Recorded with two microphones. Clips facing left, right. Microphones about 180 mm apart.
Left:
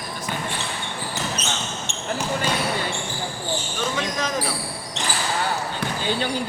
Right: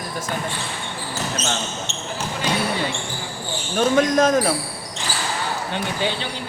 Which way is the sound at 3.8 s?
50° right (ahead or behind).